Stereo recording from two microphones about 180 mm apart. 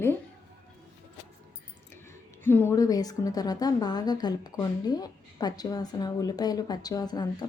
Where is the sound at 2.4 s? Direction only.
10° left (ahead or behind).